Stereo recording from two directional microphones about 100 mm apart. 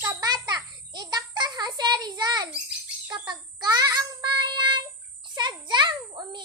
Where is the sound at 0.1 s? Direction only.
40° right (ahead or behind).